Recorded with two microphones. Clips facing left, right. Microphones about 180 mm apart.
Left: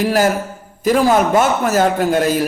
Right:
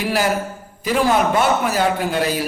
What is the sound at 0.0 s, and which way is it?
A man's voice, 45° left (ahead or behind).